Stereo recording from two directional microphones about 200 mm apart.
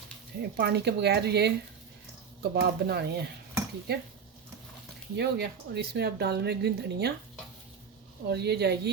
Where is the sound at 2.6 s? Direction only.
50° right (ahead or behind).